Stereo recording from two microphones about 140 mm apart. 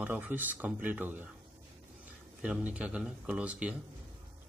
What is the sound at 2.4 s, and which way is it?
A man's voice, 10° right (ahead or behind).